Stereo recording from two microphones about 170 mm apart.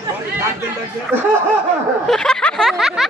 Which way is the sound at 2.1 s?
5° left (ahead or behind).